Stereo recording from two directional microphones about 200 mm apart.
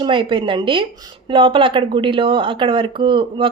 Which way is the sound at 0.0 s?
25° right (ahead or behind).